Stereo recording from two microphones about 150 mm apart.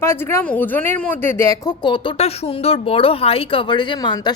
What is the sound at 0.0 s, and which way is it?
Speech, 15° left (ahead or behind).